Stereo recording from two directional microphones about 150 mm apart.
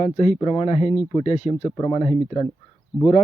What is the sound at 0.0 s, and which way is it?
Speech, 50° left (ahead or behind).